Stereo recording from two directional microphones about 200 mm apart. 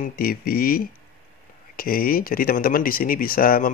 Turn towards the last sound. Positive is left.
turn(degrees=45)  # may be behind; listen again after turning